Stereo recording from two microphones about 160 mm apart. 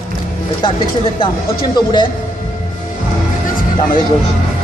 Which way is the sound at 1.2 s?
30° left (ahead or behind).